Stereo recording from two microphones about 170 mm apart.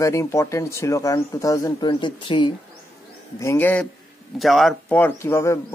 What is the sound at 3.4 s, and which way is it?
Speech, 15° left (ahead or behind).